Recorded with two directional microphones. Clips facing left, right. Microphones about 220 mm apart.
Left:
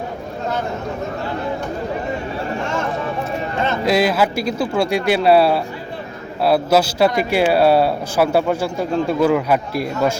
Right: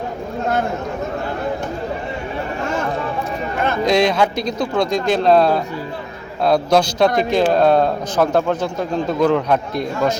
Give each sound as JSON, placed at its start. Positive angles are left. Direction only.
{"t": 3.8, "sound": "a man's voice", "side_deg": 5}